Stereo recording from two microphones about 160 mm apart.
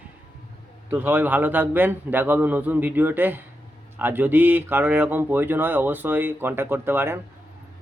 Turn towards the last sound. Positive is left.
turn(degrees=-15)  # may be behind; listen again after turning